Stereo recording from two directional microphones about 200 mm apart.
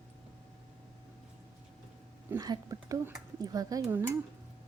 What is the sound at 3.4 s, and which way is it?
Speech, 20° right (ahead or behind).